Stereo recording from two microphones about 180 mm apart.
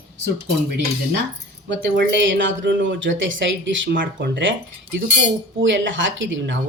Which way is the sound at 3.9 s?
65° right (ahead or behind).